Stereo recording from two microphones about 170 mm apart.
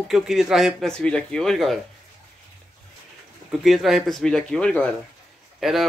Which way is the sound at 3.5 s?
Centre (ahead or behind).